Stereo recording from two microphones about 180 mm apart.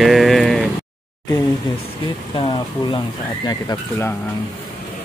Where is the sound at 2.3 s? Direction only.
30° left (ahead or behind).